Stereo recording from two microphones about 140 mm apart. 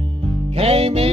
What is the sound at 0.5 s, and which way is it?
Music, 45° right (ahead or behind).